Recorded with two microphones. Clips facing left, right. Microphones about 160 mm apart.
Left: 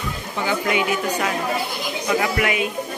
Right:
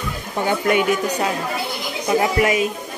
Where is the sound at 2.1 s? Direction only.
35° right (ahead or behind).